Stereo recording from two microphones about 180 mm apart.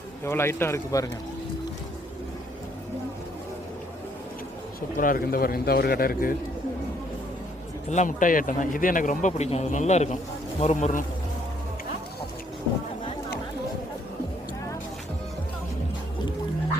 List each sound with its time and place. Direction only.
0.3 s speech: 15° left (ahead or behind)
4.9 s a man's voice: 50° left (ahead or behind)
7.9 s speech: 45° left (ahead or behind)